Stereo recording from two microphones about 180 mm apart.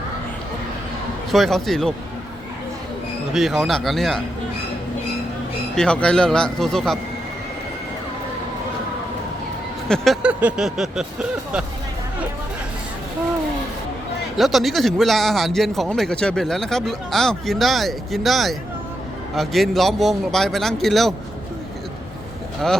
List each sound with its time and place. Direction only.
1.3 s speech: centre (ahead or behind)
3.3 s speech: centre (ahead or behind)
5.7 s speech: 5° left (ahead or behind)
9.9 s speech: centre (ahead or behind)
14.3 s speech: centre (ahead or behind)